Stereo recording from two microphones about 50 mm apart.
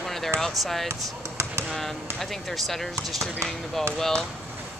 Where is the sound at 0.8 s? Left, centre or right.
Right.